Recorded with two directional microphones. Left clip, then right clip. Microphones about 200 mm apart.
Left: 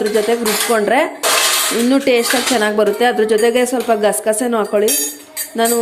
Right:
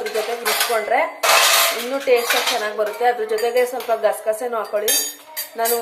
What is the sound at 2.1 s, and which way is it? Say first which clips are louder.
Speech: right 2 dB; 55° left (ahead or behind).